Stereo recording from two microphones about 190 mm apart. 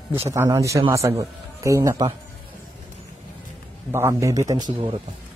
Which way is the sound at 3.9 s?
15° right (ahead or behind).